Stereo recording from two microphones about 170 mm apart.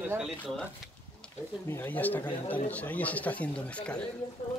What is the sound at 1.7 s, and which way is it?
Speech, 10° left (ahead or behind).